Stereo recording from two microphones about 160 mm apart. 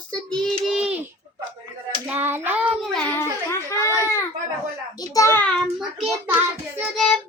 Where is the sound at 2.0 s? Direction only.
10° right (ahead or behind).